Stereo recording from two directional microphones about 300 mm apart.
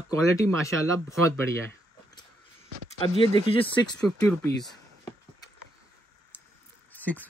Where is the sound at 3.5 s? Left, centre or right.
Centre.